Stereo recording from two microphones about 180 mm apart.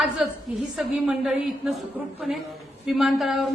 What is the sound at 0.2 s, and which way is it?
A woman's voice, 5° right (ahead or behind).